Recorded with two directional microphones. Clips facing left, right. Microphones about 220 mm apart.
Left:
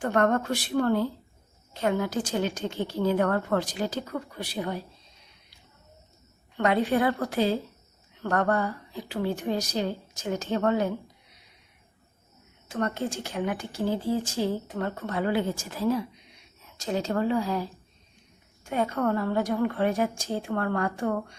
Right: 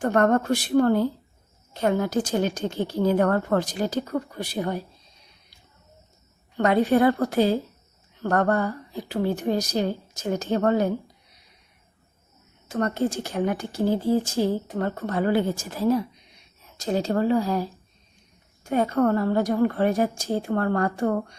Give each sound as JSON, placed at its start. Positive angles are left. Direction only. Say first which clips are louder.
{"t": 0.0, "sound": "a woman's voice", "louder": "right 4 dB", "side_deg": -40}
{"t": 6.6, "sound": "speech", "louder": "right 4 dB", "side_deg": -40}
{"t": 12.6, "sound": "speech", "louder": "right 5 dB", "side_deg": -40}